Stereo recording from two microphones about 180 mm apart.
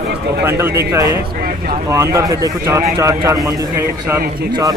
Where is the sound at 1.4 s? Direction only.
55° right (ahead or behind).